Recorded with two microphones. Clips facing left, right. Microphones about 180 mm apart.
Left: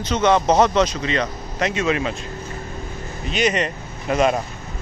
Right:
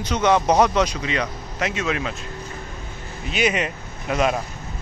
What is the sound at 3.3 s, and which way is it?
Speech, 5° right (ahead or behind).